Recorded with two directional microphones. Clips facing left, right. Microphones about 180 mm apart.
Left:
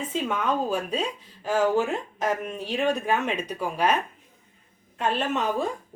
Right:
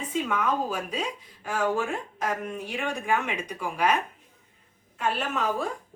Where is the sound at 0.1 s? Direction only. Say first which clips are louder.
Even; 25° left (ahead or behind).